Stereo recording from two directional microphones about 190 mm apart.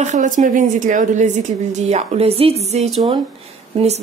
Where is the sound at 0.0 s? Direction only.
40° right (ahead or behind).